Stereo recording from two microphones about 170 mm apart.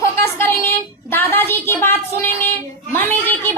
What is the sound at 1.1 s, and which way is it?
A woman's voice, 10° left (ahead or behind).